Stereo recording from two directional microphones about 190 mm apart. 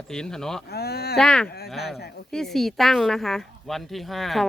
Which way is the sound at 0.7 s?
55° left (ahead or behind).